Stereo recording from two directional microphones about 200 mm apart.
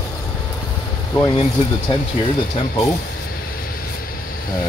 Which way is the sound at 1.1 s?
20° left (ahead or behind).